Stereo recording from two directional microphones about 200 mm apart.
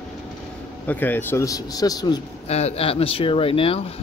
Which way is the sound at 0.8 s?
10° left (ahead or behind).